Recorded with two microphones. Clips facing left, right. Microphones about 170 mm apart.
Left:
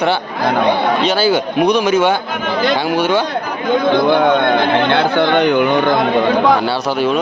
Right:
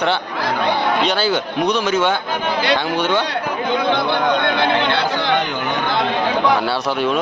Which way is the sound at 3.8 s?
50° left (ahead or behind).